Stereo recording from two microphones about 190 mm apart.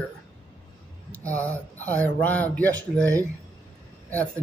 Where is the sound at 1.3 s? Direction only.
5° left (ahead or behind).